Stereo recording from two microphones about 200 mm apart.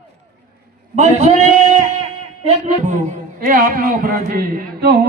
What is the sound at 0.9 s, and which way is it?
A man's voice, 35° right (ahead or behind).